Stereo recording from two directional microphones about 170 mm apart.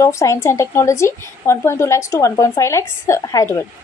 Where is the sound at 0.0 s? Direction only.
15° left (ahead or behind).